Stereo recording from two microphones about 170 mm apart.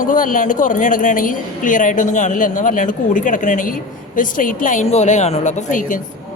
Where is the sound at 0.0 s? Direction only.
50° left (ahead or behind).